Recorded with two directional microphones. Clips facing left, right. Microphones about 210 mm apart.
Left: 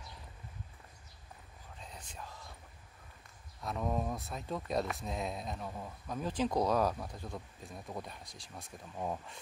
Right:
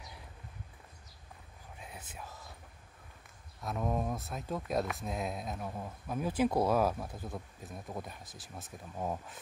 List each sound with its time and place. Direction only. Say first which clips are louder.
1.8 s whispering: right 1 dB; 5° right (ahead or behind)
3.6 s speech: right 1 dB; 5° right (ahead or behind)